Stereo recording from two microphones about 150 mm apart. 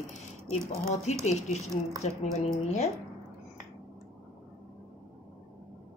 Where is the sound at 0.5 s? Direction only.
45° left (ahead or behind).